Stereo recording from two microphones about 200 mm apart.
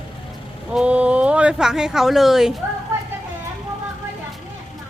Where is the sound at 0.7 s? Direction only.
5° right (ahead or behind).